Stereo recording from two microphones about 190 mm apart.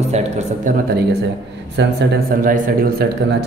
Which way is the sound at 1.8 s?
65° right (ahead or behind).